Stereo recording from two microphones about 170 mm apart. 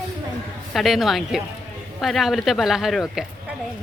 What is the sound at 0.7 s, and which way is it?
A woman's voice, centre (ahead or behind).